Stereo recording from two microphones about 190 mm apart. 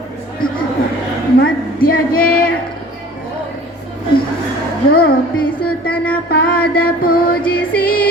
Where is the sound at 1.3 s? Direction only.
50° left (ahead or behind).